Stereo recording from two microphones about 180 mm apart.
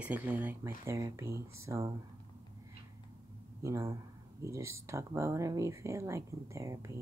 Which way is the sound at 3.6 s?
15° right (ahead or behind).